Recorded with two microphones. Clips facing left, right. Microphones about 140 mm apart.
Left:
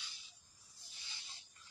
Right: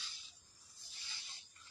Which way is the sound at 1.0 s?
20° left (ahead or behind).